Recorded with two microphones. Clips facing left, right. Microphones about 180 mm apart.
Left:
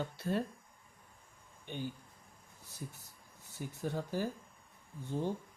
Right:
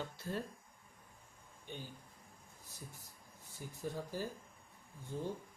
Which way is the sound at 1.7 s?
70° left (ahead or behind).